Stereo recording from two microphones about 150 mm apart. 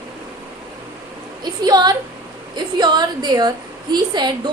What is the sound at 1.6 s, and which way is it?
A woman's voice, 25° right (ahead or behind).